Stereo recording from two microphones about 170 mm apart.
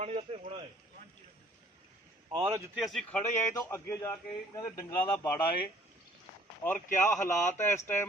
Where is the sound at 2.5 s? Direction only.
Centre (ahead or behind).